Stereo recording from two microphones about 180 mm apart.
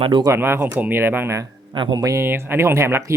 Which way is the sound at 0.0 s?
25° right (ahead or behind).